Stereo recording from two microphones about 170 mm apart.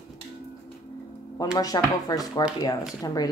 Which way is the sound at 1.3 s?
20° left (ahead or behind).